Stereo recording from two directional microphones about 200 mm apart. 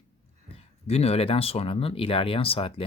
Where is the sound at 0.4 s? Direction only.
30° left (ahead or behind).